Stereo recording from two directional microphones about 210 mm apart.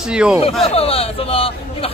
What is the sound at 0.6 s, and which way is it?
A man's voice, 25° left (ahead or behind).